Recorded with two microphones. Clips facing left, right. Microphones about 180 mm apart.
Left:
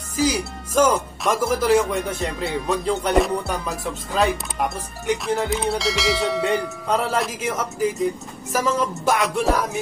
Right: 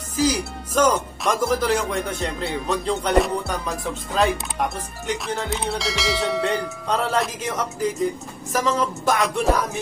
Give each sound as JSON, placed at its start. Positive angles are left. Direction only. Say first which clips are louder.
{"t": 0.1, "sound": "music", "louder": "even", "side_deg": 10}